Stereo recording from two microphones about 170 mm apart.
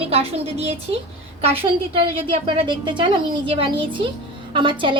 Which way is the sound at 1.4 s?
35° right (ahead or behind).